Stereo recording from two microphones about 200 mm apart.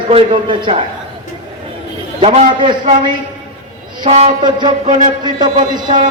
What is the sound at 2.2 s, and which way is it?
A man's voice, 30° right (ahead or behind).